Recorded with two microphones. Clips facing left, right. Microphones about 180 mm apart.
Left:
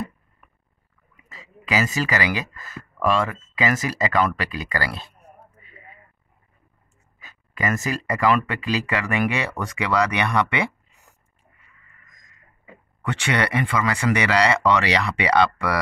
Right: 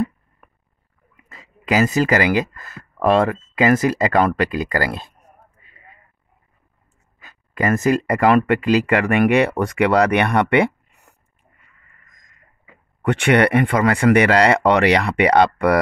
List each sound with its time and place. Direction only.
1.3 s speech: 55° right (ahead or behind)
7.2 s speech: 55° right (ahead or behind)
13.0 s speech: 55° right (ahead or behind)